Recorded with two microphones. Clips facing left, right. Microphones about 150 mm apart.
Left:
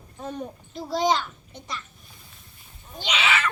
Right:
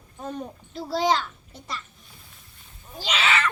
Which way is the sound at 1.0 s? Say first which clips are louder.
Even; 5° right (ahead or behind).